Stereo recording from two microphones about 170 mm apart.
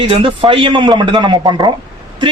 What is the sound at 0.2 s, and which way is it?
A man's voice, 30° right (ahead or behind).